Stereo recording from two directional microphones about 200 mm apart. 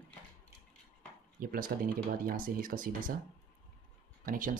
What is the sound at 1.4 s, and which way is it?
Speech, 45° right (ahead or behind).